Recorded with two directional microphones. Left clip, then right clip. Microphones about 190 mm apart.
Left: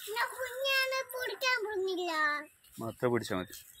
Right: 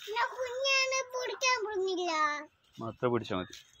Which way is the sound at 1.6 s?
5° right (ahead or behind).